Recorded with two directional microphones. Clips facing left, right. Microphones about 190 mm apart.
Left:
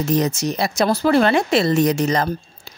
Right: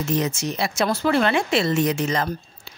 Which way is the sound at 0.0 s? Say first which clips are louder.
Left 4 dB; 40° left (ahead or behind).